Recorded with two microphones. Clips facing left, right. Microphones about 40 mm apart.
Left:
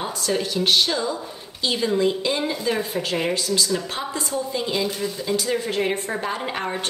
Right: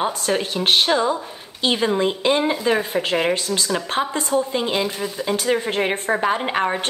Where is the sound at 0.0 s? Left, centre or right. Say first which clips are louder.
Right 3 dB; right.